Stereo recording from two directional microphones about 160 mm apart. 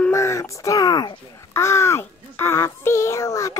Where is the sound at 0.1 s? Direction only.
20° left (ahead or behind).